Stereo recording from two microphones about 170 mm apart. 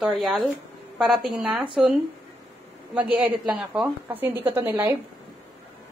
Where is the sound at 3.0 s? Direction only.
10° right (ahead or behind).